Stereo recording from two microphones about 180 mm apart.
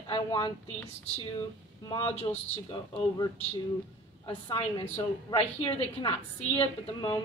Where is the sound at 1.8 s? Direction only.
20° left (ahead or behind).